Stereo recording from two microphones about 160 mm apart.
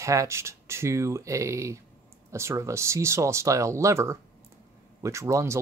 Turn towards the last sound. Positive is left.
turn(degrees=-20)  # may be behind; listen again after turning